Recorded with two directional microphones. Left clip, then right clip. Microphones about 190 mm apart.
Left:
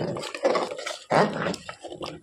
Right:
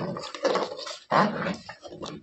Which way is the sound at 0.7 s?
35° left (ahead or behind).